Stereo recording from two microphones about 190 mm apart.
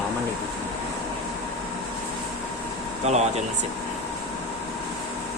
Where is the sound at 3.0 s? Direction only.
35° right (ahead or behind).